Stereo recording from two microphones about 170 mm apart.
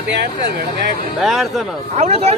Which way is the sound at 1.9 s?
40° right (ahead or behind).